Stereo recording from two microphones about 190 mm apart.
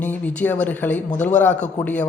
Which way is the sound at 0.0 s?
10° left (ahead or behind).